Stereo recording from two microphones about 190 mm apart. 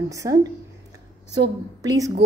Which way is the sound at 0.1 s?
20° right (ahead or behind).